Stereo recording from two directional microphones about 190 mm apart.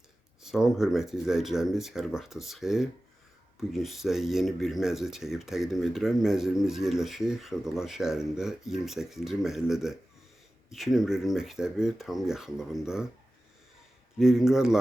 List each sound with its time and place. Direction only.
0.4 s speech: centre (ahead or behind)
14.2 s speech: centre (ahead or behind)